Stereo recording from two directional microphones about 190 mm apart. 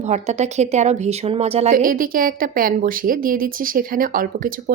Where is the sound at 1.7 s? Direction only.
45° right (ahead or behind).